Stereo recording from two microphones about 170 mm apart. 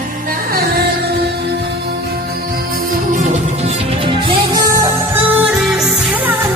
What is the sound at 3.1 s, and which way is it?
Music, 40° right (ahead or behind).